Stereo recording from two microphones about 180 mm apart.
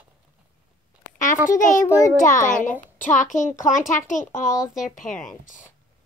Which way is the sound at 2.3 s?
45° left (ahead or behind).